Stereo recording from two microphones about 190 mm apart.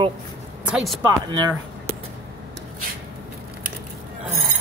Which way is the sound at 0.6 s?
Centre (ahead or behind).